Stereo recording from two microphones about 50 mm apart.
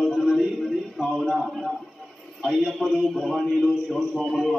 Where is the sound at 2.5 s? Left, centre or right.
Centre.